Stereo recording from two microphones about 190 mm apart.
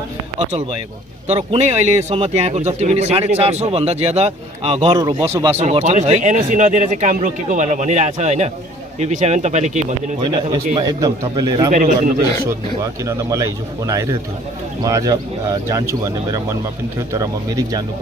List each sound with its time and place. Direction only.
1.2 s a man's voice: 35° right (ahead or behind)
5.3 s speech: 10° right (ahead or behind)
5.6 s a man's voice: 35° right (ahead or behind); by 11.7 s 20° right (ahead or behind)
11.7 s a man's voice: 45° right (ahead or behind)
13.0 s speech: 15° right (ahead or behind)